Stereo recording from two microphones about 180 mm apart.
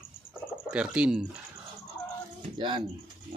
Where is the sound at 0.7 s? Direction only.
5° right (ahead or behind).